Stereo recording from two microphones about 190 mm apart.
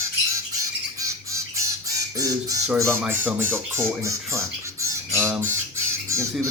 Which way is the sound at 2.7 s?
15° right (ahead or behind).